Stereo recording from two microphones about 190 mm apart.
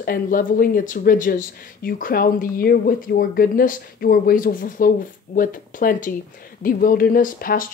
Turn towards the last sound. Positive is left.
turn(degrees=50)  # may be behind; listen again after turning